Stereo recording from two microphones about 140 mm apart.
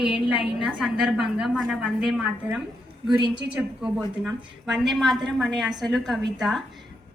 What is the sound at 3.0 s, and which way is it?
Speech, 35° right (ahead or behind).